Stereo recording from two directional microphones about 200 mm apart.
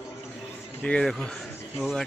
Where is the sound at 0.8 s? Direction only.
5° left (ahead or behind).